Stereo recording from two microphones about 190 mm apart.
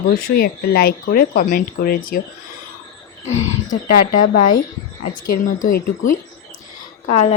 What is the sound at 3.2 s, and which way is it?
Speech, 35° left (ahead or behind).